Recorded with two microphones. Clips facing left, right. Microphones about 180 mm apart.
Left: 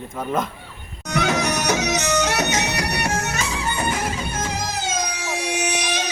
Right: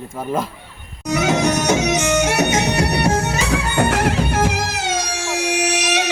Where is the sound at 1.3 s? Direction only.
25° right (ahead or behind).